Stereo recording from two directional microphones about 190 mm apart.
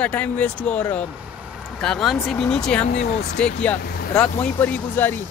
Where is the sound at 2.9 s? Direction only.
70° left (ahead or behind).